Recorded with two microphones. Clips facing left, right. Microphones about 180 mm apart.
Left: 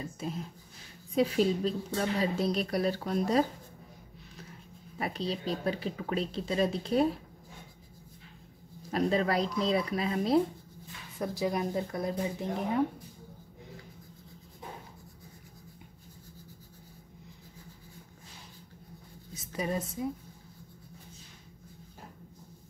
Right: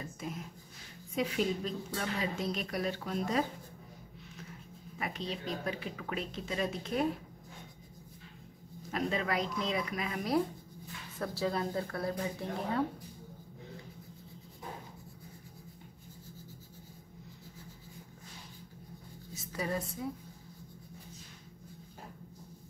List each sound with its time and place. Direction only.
1.1 s speech: 35° left (ahead or behind)
4.9 s speech: 35° left (ahead or behind)
8.9 s speech: 35° left (ahead or behind)
11.1 s speech: 15° left (ahead or behind)
19.5 s a woman's voice: 20° left (ahead or behind)